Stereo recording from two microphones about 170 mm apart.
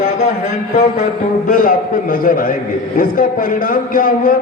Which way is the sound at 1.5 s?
60° left (ahead or behind).